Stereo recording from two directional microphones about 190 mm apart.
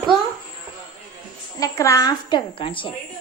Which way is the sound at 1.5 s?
15° left (ahead or behind).